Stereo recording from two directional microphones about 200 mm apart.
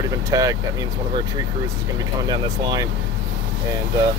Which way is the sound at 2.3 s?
20° right (ahead or behind).